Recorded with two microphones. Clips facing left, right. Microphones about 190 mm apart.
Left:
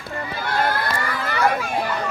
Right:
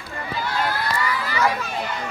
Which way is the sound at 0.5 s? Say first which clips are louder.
Left 3 dB; 50° left (ahead or behind).